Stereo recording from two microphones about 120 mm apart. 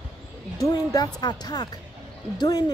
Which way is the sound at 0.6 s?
30° left (ahead or behind).